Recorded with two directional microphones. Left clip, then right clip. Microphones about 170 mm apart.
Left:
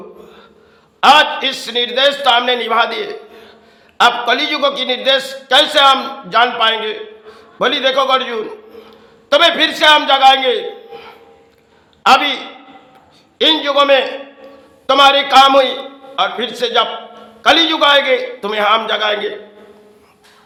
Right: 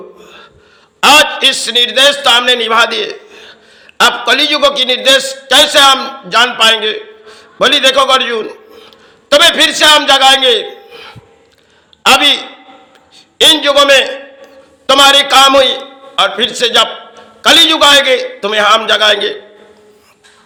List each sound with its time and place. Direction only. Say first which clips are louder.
0.2 s music: right 4 dB; 15° right (ahead or behind)
1.0 s a man's voice: right 3 dB; 15° right (ahead or behind)
13.4 s a man's voice: right 5 dB; 15° right (ahead or behind)